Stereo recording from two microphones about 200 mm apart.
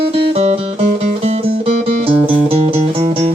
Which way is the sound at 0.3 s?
30° right (ahead or behind).